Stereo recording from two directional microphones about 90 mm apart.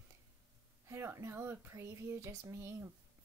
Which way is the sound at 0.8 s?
30° right (ahead or behind).